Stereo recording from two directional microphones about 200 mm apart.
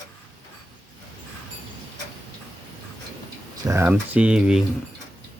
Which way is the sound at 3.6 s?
10° right (ahead or behind).